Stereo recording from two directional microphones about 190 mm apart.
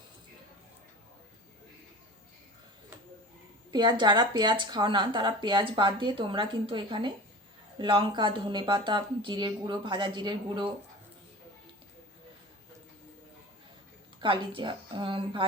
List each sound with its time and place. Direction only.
3.7 s speech: 25° right (ahead or behind)
14.2 s speech: 25° right (ahead or behind)